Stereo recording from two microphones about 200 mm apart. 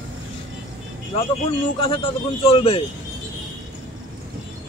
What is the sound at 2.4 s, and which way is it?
Speech, 30° left (ahead or behind).